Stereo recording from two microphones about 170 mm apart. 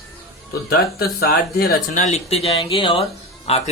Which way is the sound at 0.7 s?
65° left (ahead or behind).